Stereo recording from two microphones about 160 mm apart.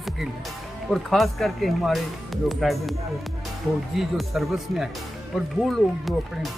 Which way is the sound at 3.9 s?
Centre (ahead or behind).